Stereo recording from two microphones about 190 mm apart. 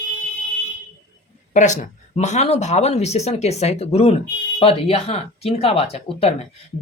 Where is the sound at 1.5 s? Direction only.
40° left (ahead or behind).